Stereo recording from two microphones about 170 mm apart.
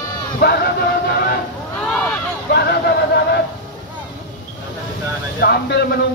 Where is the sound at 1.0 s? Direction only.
65° left (ahead or behind).